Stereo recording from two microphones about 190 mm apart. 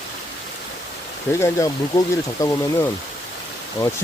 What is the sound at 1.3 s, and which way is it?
Speech, 15° left (ahead or behind).